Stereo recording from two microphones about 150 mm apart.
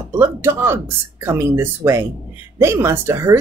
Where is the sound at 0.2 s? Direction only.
15° right (ahead or behind).